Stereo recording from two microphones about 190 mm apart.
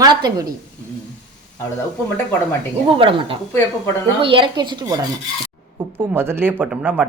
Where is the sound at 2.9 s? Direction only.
30° right (ahead or behind).